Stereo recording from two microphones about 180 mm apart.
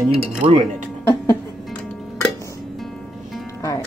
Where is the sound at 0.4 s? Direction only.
35° right (ahead or behind).